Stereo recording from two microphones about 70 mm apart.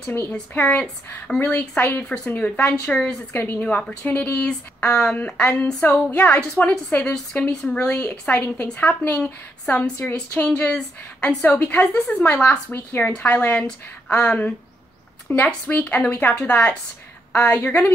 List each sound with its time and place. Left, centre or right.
0.1 s a woman's voice: left
1.5 s a woman's voice: left
2.0 s speech: centre
3.3 s a woman's voice: left
3.6 s a woman's voice: centre